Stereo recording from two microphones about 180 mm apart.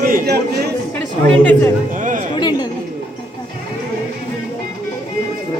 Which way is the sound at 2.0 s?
45° right (ahead or behind).